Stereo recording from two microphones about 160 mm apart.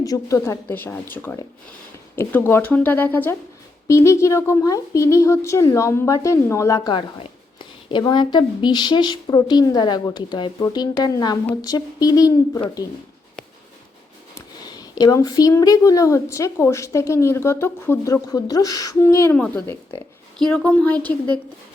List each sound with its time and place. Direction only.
0.0 s speech: 20° left (ahead or behind)
14.3 s speech: 25° left (ahead or behind)